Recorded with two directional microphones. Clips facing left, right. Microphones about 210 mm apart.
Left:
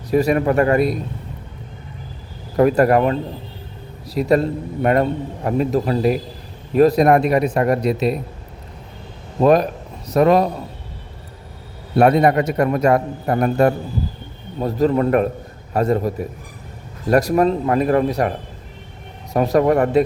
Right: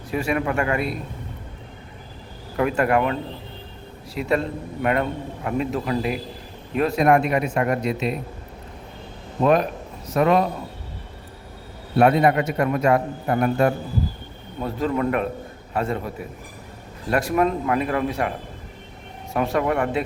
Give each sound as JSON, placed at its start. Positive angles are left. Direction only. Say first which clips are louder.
{"t": 0.1, "sound": "a man's voice", "louder": "left 7 dB", "side_deg": 40}
{"t": 2.6, "sound": "a man's voice", "louder": "left 6 dB", "side_deg": 40}
{"t": 9.4, "sound": "a man's voice", "louder": "left 4 dB", "side_deg": 40}
{"t": 11.9, "sound": "a man's voice", "louder": "left 3 dB", "side_deg": 40}